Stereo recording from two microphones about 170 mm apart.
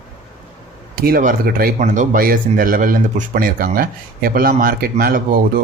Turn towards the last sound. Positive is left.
turn(degrees=-60)  # may be behind; listen again after turning